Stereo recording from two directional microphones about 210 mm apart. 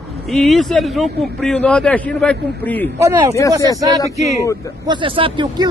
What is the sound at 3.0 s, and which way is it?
Speech, 15° right (ahead or behind).